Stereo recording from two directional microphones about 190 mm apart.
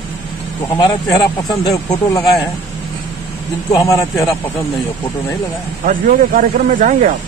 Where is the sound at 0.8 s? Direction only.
25° left (ahead or behind).